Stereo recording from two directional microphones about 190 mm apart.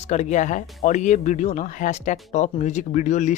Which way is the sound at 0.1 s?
40° left (ahead or behind).